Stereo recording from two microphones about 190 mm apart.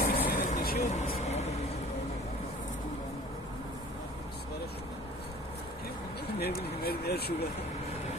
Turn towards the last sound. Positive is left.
turn(degrees=55)  # may be behind; listen again after turning